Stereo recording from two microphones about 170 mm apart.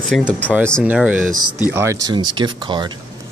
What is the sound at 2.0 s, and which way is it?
Speech, 25° right (ahead or behind).